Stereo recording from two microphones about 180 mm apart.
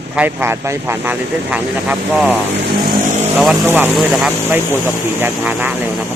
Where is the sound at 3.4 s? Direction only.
5° right (ahead or behind).